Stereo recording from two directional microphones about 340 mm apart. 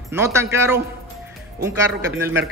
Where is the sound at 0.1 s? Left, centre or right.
Centre.